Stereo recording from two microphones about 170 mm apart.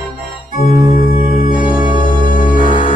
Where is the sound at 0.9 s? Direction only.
55° left (ahead or behind).